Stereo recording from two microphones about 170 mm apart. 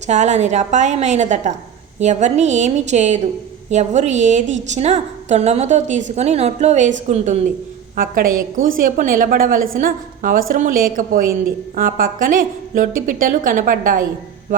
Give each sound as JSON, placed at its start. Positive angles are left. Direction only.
{"t": 0.1, "sound": "a woman's voice", "side_deg": -45}
{"t": 7.9, "sound": "a woman's voice", "side_deg": -55}